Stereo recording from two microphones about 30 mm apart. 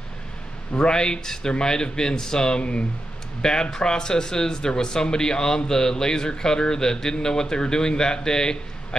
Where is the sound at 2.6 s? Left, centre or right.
Left.